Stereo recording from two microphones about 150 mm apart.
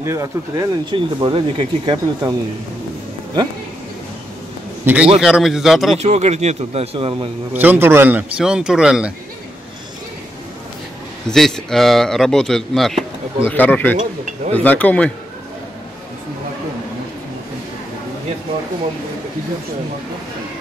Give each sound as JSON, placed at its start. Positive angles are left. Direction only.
{"t": 0.0, "sound": "speech", "side_deg": -20}
{"t": 0.9, "sound": "speech", "side_deg": -35}
{"t": 4.8, "sound": "a man's voice", "side_deg": -10}
{"t": 5.9, "sound": "speech", "side_deg": -45}
{"t": 7.5, "sound": "speech", "side_deg": -10}
{"t": 11.2, "sound": "speech", "side_deg": 5}
{"t": 13.4, "sound": "speech", "side_deg": 10}